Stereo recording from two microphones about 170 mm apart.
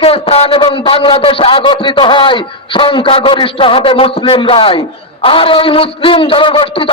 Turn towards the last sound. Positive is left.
turn(degrees=30)  # may be behind; listen again after turning